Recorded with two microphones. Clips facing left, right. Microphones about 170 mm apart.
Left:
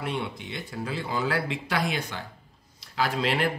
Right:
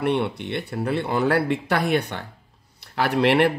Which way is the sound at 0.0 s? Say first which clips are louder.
Right 9 dB; 65° right (ahead or behind).